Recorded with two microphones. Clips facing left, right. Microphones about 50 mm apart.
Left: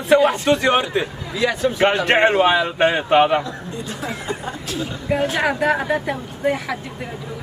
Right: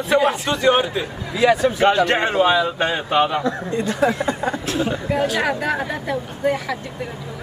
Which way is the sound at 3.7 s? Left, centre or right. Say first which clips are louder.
Right 10 dB; right.